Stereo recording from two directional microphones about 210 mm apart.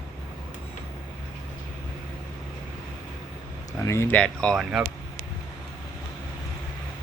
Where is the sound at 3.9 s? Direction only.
10° left (ahead or behind).